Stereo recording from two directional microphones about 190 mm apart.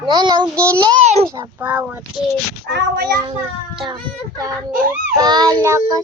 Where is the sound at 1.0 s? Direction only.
35° right (ahead or behind).